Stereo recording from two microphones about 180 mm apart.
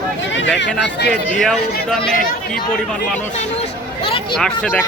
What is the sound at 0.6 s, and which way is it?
Speech, 75° left (ahead or behind).